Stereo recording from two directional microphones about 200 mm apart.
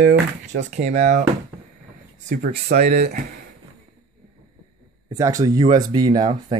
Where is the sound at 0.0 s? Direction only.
65° right (ahead or behind).